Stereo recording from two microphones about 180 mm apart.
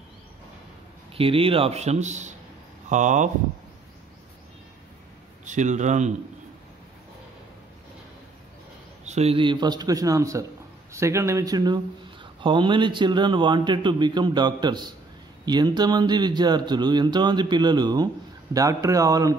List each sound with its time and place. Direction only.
1.1 s a man's voice: 30° right (ahead or behind)
5.4 s a man's voice: 40° right (ahead or behind)
9.0 s speech: 35° right (ahead or behind); by 19.3 s 20° right (ahead or behind)